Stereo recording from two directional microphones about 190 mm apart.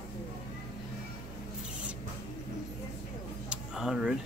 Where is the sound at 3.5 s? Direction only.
5° right (ahead or behind).